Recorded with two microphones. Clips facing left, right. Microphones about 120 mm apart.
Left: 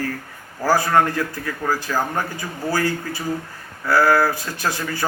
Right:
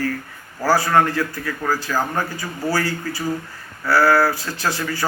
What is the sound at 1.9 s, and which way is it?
Speech, 15° left (ahead or behind).